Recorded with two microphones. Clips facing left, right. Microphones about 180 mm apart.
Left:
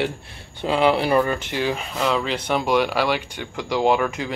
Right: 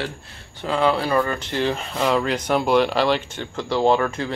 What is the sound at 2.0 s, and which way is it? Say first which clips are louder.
Speech: right 2 dB; 5° right (ahead or behind).